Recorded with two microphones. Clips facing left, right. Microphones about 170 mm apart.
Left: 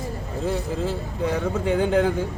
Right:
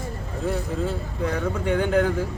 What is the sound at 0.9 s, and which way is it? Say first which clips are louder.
Speech: left 2 dB; 25° left (ahead or behind).